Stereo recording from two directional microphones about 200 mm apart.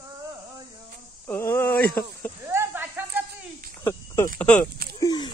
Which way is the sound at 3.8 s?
15° left (ahead or behind).